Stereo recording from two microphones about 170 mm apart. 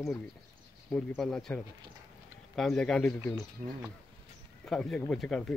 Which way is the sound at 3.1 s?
15° left (ahead or behind).